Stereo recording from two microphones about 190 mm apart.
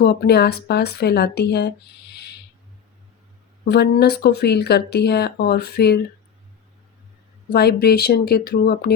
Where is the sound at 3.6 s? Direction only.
60° left (ahead or behind).